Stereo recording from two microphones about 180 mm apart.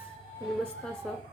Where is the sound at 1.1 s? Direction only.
5° left (ahead or behind).